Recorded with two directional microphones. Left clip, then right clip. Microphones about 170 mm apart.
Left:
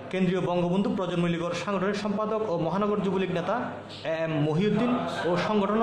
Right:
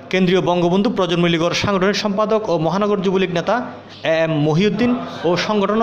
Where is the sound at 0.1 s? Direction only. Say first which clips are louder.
Right 11 dB; 40° right (ahead or behind).